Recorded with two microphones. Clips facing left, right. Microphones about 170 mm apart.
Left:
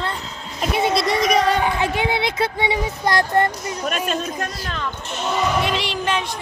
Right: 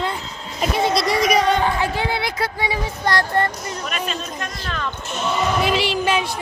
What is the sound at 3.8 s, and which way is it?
Speech, 45° left (ahead or behind).